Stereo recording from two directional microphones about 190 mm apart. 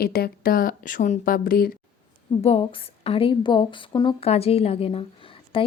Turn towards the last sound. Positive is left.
turn(degrees=30)  # may be behind; listen again after turning